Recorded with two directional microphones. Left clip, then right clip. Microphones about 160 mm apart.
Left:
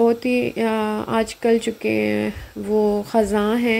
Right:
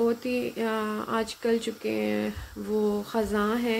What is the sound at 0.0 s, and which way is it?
Speech, 20° left (ahead or behind).